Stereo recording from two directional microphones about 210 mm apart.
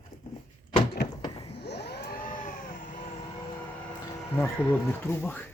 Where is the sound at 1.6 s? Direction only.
50° left (ahead or behind).